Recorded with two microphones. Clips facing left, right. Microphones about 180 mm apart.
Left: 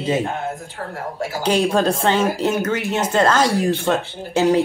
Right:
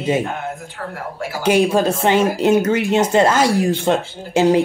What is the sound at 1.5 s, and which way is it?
Speech, 10° right (ahead or behind).